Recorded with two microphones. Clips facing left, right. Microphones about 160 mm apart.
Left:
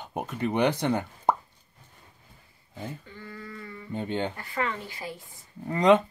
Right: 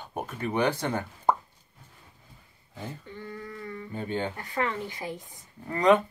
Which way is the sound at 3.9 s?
20° left (ahead or behind).